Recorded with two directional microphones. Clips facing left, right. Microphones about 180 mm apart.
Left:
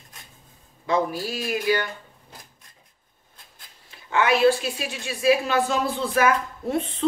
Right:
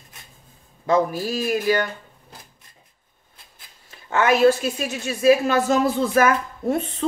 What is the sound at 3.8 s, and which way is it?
A woman's voice, 45° right (ahead or behind).